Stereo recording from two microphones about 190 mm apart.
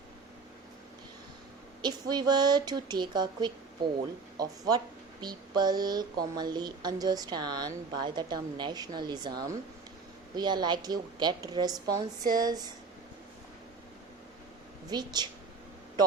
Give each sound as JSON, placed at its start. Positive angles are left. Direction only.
{"t": 1.8, "sound": "a woman's voice", "side_deg": -20}
{"t": 14.8, "sound": "a woman's voice", "side_deg": -20}